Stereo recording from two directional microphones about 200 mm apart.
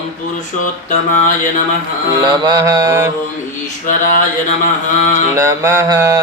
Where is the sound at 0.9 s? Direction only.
40° left (ahead or behind).